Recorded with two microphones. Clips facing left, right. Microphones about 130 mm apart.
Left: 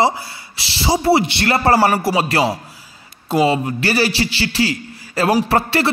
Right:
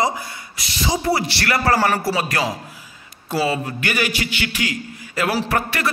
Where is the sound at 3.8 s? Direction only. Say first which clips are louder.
Left 5 dB; 35° left (ahead or behind).